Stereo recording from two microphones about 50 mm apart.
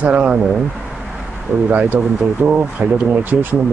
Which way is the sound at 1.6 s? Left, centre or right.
Right.